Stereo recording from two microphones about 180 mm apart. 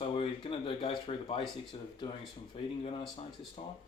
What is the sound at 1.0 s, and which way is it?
Speech, 30° left (ahead or behind).